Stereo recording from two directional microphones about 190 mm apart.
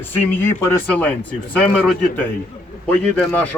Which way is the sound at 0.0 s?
10° left (ahead or behind).